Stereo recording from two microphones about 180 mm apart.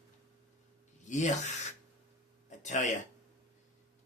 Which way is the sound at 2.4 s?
40° left (ahead or behind).